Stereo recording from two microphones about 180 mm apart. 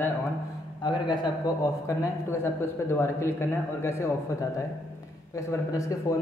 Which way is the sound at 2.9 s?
15° left (ahead or behind).